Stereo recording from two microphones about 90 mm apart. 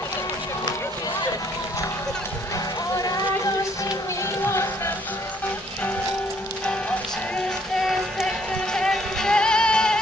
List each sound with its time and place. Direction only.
3.0 s a sound: 40° left (ahead or behind)
4.5 s music: 30° left (ahead or behind)
7.8 s music: centre (ahead or behind)